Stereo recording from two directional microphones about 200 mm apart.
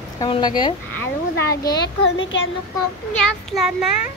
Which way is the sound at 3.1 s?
Centre (ahead or behind).